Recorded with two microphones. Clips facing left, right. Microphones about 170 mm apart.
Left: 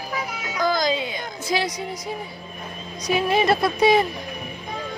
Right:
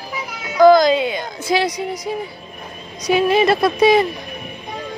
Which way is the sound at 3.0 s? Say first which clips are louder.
Right 5 dB; 85° right.